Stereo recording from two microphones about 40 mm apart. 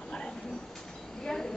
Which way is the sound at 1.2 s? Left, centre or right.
Centre.